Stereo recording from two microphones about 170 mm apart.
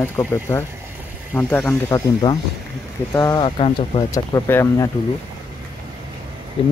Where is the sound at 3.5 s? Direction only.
35° left (ahead or behind); by 4.8 s 15° left (ahead or behind).